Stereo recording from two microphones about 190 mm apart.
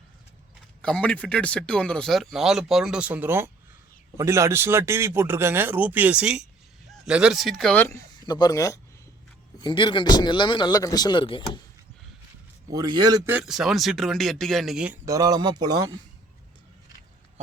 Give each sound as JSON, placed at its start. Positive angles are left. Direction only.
{"t": 0.8, "sound": "a man's voice", "side_deg": 5}
{"t": 12.7, "sound": "speech", "side_deg": -20}
{"t": 13.3, "sound": "speech", "side_deg": -5}
{"t": 15.0, "sound": "speech", "side_deg": -20}